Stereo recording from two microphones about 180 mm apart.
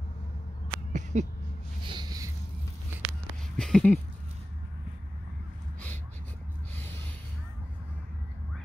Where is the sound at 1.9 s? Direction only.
25° right (ahead or behind).